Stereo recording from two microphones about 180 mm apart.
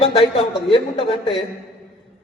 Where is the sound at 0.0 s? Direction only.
30° left (ahead or behind).